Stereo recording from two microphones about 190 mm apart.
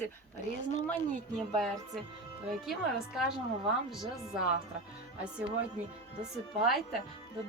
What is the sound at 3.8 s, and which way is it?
Speech, centre (ahead or behind).